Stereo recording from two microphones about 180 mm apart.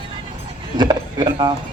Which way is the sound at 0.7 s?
25° right (ahead or behind).